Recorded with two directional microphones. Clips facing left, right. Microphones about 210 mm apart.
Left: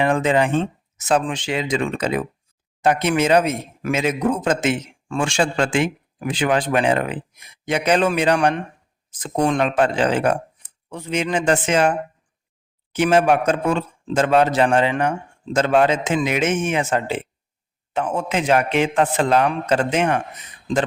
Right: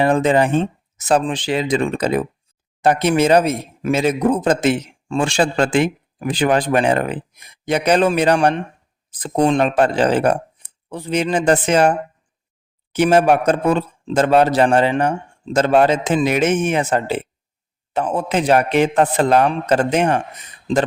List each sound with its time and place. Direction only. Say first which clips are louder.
0.0 s speech: right 3 dB; 35° right (ahead or behind)
9.0 s a sound: right 3 dB; 35° right (ahead or behind)
9.3 s speech: right 4 dB; 20° right (ahead or behind)
9.6 s speech: right 3 dB; 35° right (ahead or behind)